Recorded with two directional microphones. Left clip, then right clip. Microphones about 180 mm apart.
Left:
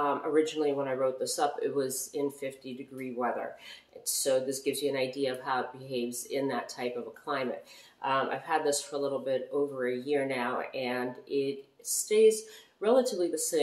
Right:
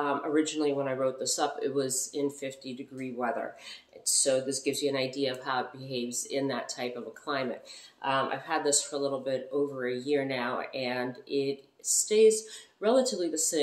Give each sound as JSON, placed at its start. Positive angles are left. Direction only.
{"t": 0.0, "sound": "speech", "side_deg": -10}